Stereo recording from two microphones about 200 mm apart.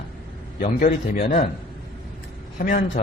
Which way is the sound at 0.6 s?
35° left (ahead or behind).